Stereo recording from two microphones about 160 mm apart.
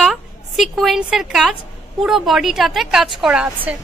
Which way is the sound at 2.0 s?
Centre (ahead or behind).